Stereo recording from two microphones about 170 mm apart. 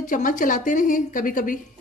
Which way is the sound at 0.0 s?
50° left (ahead or behind).